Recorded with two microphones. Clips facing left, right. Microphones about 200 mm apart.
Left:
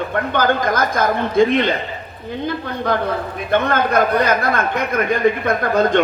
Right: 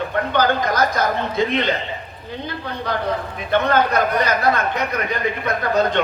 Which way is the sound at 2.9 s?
50° left (ahead or behind).